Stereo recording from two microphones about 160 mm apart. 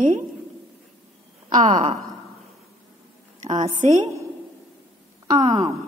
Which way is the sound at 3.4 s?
50° right (ahead or behind).